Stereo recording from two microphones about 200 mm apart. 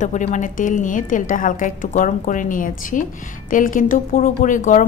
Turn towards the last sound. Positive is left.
turn(degrees=40)  # may be behind; listen again after turning